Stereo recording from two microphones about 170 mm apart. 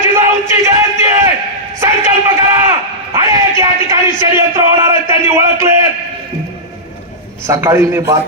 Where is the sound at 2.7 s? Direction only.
20° right (ahead or behind).